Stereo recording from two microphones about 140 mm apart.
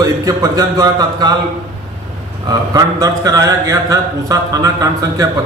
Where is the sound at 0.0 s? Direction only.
25° right (ahead or behind).